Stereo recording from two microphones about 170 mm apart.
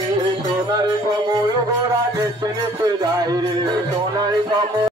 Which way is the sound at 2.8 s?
20° right (ahead or behind).